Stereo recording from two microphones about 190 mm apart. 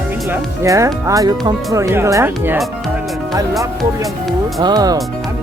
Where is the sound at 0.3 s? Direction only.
15° right (ahead or behind).